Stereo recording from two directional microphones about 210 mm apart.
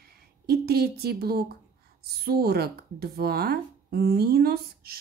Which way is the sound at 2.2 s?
50° right (ahead or behind).